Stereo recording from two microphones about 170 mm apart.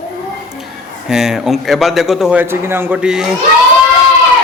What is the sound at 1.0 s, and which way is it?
A man's voice, 5° right (ahead or behind).